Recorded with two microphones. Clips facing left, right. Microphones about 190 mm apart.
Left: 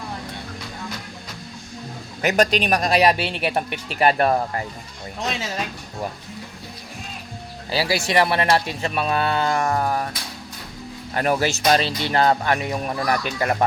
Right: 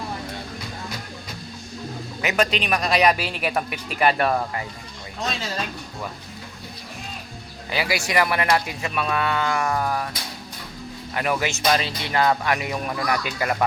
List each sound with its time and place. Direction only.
2.2 s speech: 40° left (ahead or behind)
7.7 s speech: 30° left (ahead or behind)
11.1 s speech: 35° left (ahead or behind)